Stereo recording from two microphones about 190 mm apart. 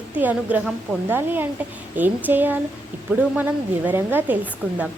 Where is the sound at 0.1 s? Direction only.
10° right (ahead or behind).